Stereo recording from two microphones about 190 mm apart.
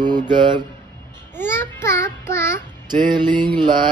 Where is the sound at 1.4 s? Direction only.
10° left (ahead or behind).